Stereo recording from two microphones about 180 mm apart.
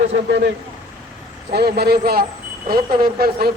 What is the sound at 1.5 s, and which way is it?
Speech, 65° right (ahead or behind).